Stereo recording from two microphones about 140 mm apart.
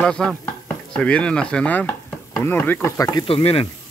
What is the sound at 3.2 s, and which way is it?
Speech, 40° left (ahead or behind).